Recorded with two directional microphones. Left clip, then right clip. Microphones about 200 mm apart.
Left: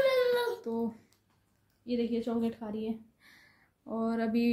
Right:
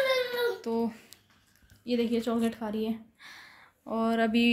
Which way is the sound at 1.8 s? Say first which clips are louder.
Right 4 dB; 25° right (ahead or behind).